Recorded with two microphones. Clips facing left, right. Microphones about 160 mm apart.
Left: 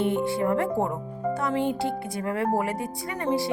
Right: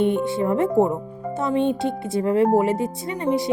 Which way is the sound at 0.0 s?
20° right (ahead or behind).